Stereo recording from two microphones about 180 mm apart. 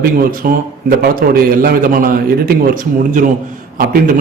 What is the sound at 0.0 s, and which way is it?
A man's voice, 50° right (ahead or behind).